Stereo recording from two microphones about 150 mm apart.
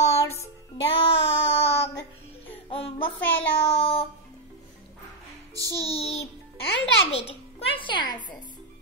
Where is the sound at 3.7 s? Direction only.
40° left (ahead or behind).